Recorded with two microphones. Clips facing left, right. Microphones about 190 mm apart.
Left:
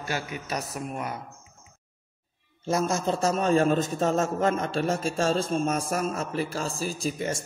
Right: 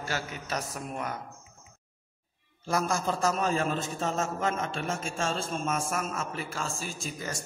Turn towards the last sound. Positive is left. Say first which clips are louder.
# left 7 dB
turn(degrees=25)  # may be behind; listen again after turning